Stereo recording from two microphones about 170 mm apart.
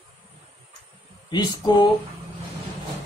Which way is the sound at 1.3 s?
25° left (ahead or behind).